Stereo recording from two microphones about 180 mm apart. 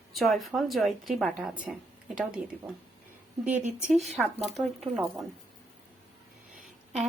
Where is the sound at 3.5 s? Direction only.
40° right (ahead or behind).